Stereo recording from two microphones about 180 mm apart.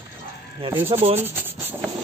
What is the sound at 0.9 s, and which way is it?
Speech, 35° right (ahead or behind).